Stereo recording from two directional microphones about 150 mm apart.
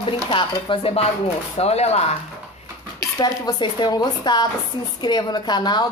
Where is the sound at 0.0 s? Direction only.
35° left (ahead or behind).